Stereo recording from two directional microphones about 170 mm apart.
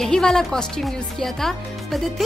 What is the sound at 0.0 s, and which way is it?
A woman's voice, 5° left (ahead or behind).